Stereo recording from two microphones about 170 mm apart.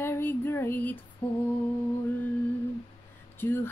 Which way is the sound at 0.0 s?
15° left (ahead or behind).